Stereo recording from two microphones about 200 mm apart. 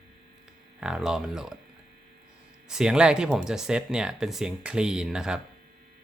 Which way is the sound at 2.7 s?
5° right (ahead or behind).